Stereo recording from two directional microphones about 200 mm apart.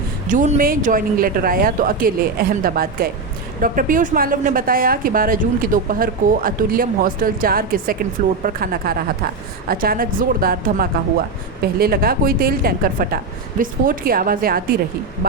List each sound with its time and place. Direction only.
0.3 s a woman's voice: 40° right (ahead or behind)